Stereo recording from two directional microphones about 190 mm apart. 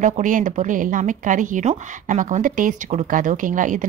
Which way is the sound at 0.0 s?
40° right (ahead or behind).